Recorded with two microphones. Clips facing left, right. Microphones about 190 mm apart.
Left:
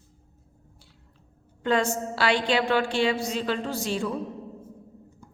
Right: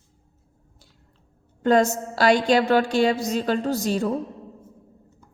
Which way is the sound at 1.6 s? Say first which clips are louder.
Right 6 dB; 40° right (ahead or behind).